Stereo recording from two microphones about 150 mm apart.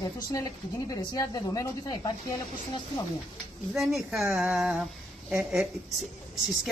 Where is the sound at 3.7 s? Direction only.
Centre (ahead or behind).